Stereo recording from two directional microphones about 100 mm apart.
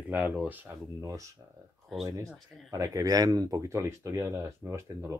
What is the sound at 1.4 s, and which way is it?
Speech, 30° right (ahead or behind).